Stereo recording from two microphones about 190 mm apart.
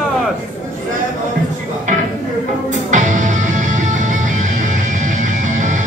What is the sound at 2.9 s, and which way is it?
Music, 40° right (ahead or behind).